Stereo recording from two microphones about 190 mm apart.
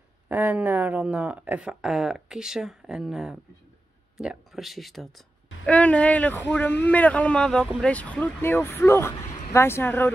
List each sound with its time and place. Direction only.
0.3 s speech: 10° right (ahead or behind); by 10.1 s 10° left (ahead or behind)